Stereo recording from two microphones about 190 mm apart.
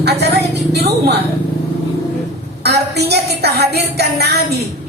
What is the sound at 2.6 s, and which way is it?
A woman's voice, 60° right (ahead or behind).